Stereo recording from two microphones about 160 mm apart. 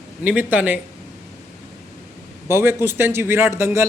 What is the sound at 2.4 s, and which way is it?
A man's voice, 15° right (ahead or behind).